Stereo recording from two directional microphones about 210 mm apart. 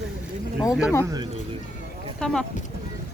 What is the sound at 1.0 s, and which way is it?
Speech, 15° right (ahead or behind).